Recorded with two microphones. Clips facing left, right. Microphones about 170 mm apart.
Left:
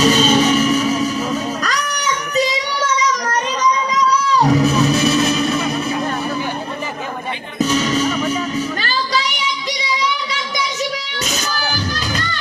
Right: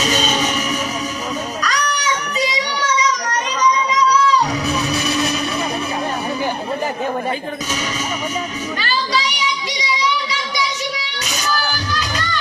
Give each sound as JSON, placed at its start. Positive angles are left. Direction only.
{"t": 0.2, "sound": "music", "side_deg": 40}
{"t": 1.6, "sound": "guitar", "side_deg": 45}
{"t": 11.7, "sound": "a sound", "side_deg": 45}